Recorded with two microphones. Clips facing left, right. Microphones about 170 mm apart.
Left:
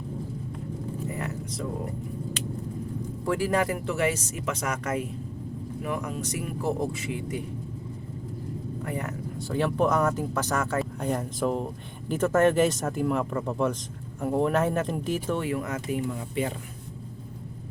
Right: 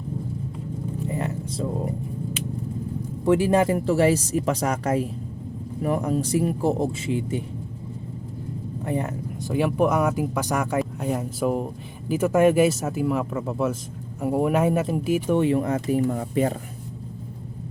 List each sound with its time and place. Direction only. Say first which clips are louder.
1.0 s a sound: right 7 dB; 25° right (ahead or behind)
3.2 s a man's voice: right 7 dB; 25° right (ahead or behind)
8.8 s vehicle: right 7 dB; 25° right (ahead or behind)
9.5 s speech: right 3 dB; 10° right (ahead or behind)
15.4 s speech: right 8 dB; 25° right (ahead or behind); by 16.6 s 40° right (ahead or behind)